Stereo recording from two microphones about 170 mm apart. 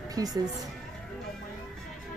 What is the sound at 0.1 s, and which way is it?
Speech, 20° right (ahead or behind).